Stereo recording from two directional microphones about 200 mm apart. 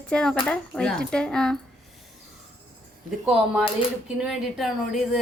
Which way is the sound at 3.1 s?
5° right (ahead or behind).